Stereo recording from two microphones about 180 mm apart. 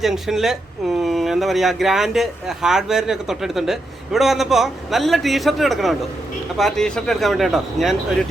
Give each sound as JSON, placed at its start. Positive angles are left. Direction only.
{"t": 0.0, "sound": "speech", "side_deg": 0}